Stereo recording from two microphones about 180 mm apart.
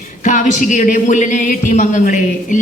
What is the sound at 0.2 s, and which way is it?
Speech, 45° left (ahead or behind).